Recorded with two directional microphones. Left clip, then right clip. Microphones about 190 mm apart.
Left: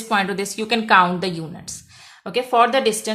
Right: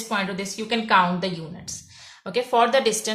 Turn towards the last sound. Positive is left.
turn(degrees=35)  # may be behind; listen again after turning